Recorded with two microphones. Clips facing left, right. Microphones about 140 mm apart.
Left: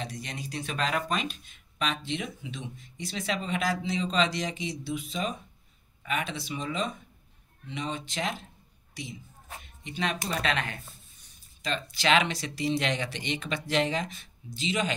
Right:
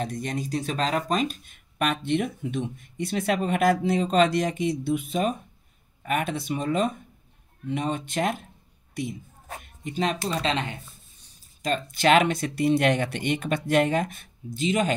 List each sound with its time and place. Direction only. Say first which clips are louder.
0.0 s speech: right 8 dB; 50° right (ahead or behind)
8.9 s a sound: right 9 dB; 50° right (ahead or behind)
10.2 s speech: right 3 dB; 25° right (ahead or behind)
11.6 s speech: right 6 dB; 50° right (ahead or behind)